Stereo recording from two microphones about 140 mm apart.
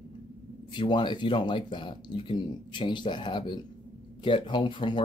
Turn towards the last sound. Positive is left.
turn(degrees=35)  # may be behind; listen again after turning